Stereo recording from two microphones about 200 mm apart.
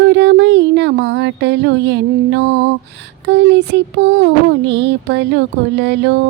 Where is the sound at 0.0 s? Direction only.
60° right (ahead or behind).